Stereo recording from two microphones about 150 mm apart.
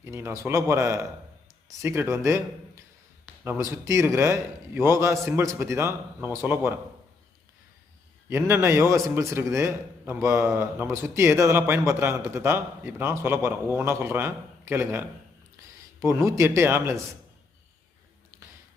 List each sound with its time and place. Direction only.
0.0 s a man's voice: 15° right (ahead or behind)
8.3 s a man's voice: 15° right (ahead or behind)